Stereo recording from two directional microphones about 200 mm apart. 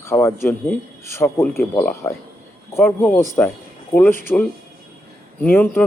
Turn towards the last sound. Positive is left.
turn(degrees=10)  # may be behind; listen again after turning